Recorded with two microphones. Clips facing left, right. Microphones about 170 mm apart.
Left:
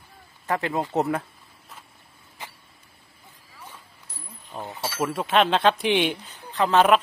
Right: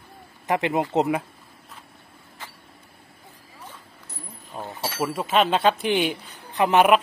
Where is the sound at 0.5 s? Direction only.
20° right (ahead or behind).